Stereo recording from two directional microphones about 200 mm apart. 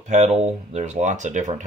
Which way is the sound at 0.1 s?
35° right (ahead or behind).